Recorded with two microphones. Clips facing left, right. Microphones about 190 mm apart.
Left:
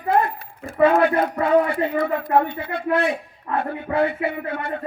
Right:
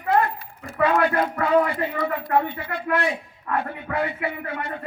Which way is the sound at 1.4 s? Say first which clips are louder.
Left 3 dB; 30° left (ahead or behind).